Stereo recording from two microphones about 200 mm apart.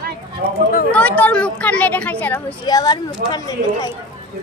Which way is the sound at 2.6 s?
20° left (ahead or behind).